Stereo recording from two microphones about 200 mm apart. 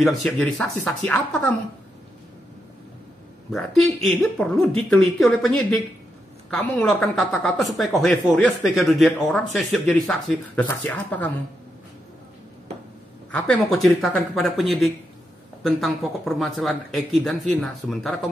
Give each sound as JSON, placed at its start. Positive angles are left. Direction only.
{"t": 0.0, "sound": "speech", "side_deg": 5}
{"t": 3.5, "sound": "speech", "side_deg": 0}
{"t": 13.3, "sound": "speech", "side_deg": 5}